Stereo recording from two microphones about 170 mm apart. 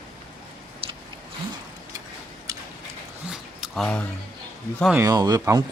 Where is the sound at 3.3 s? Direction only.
Centre (ahead or behind).